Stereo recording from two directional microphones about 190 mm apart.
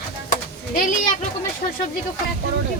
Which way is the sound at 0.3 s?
45° left (ahead or behind).